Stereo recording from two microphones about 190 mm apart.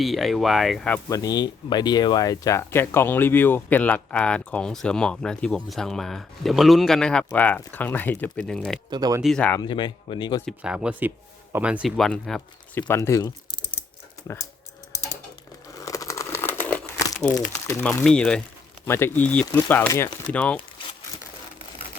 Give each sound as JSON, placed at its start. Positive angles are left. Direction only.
{"t": 0.0, "sound": "speech", "side_deg": 0}
{"t": 1.2, "sound": "speech", "side_deg": 20}
{"t": 8.9, "sound": "speech", "side_deg": -20}
{"t": 9.2, "sound": "speech", "side_deg": 5}
{"t": 9.6, "sound": "speech", "side_deg": 25}
{"t": 10.4, "sound": "speech", "side_deg": -5}
{"t": 12.9, "sound": "speech", "side_deg": 15}
{"t": 15.8, "sound": "crumpling", "side_deg": 15}
{"t": 17.8, "sound": "speech", "side_deg": 5}